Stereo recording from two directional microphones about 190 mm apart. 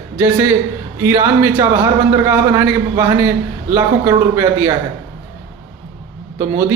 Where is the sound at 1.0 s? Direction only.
15° right (ahead or behind).